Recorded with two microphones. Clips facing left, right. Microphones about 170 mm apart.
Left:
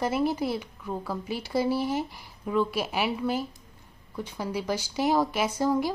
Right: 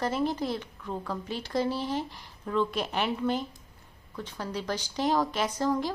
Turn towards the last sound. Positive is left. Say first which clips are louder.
# left 3 dB
turn(degrees=10)  # may be behind; listen again after turning